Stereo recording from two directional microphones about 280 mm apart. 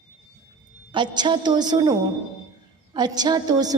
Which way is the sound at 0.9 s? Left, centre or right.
Centre.